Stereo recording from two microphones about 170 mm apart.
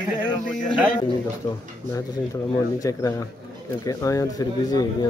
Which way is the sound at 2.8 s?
20° left (ahead or behind).